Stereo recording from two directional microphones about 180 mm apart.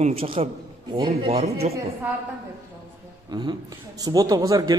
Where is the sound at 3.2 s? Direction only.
25° right (ahead or behind).